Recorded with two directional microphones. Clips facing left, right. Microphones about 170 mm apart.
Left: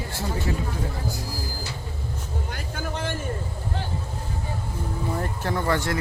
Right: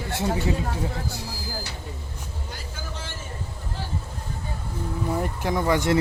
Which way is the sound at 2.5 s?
60° left (ahead or behind).